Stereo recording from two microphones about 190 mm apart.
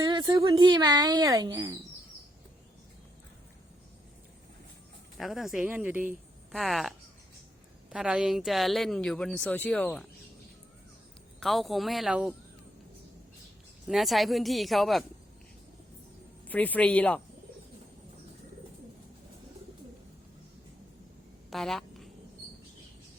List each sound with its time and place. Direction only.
0.0 s speech: 25° right (ahead or behind)
5.1 s speech: centre (ahead or behind)
11.3 s speech: centre (ahead or behind)
13.8 s speech: centre (ahead or behind)
16.5 s speech: 10° left (ahead or behind)
21.5 s a sound: centre (ahead or behind)